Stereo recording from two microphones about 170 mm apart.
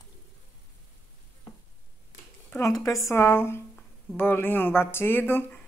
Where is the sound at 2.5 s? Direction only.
20° left (ahead or behind).